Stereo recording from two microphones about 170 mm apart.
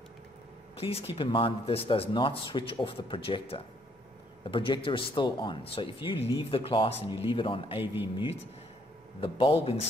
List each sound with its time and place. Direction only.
0.7 s speech: 35° left (ahead or behind)
7.8 s speech: 10° right (ahead or behind)
9.2 s speech: 35° left (ahead or behind)